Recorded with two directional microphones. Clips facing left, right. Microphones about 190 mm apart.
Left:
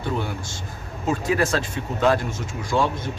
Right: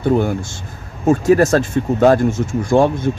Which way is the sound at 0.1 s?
45° right (ahead or behind).